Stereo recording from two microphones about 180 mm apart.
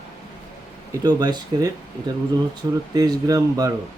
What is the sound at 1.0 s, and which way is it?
Speech, 20° right (ahead or behind).